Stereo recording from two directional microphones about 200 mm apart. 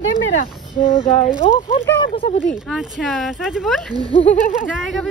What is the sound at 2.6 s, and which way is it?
Speech, centre (ahead or behind).